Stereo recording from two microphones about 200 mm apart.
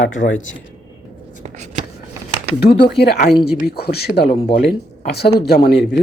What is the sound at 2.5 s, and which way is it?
Speech, 50° left (ahead or behind).